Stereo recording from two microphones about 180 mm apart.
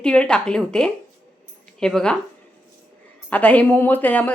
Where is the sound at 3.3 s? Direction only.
5° left (ahead or behind).